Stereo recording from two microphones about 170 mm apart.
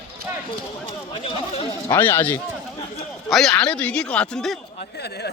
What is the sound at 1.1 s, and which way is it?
Speech, 30° left (ahead or behind).